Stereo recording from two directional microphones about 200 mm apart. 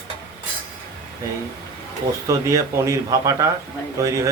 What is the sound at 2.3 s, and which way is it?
Speech, 15° right (ahead or behind).